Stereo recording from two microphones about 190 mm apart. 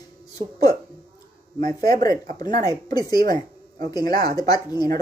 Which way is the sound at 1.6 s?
20° left (ahead or behind).